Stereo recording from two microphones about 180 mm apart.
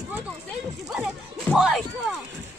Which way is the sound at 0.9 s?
5° right (ahead or behind).